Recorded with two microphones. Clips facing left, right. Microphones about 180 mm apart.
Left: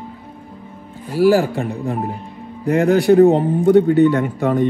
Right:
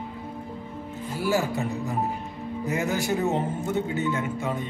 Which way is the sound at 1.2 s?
60° left (ahead or behind).